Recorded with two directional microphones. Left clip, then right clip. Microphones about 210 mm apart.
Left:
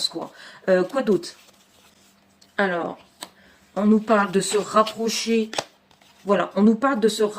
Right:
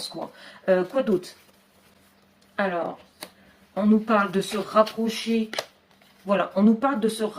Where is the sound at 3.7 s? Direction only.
40° left (ahead or behind).